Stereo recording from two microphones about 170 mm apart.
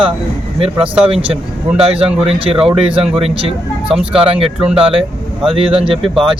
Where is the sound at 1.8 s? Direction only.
35° right (ahead or behind).